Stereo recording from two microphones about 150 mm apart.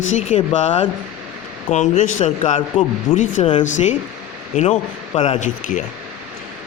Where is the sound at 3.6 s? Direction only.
55° left (ahead or behind).